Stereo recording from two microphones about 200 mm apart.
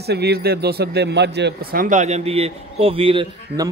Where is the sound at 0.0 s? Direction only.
55° right (ahead or behind).